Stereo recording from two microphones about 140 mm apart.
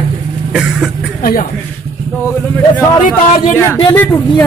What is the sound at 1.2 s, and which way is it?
Speech, 90° left.